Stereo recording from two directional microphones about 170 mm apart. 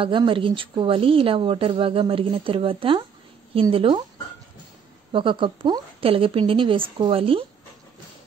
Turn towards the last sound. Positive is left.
turn(degrees=-30)  # may be behind; listen again after turning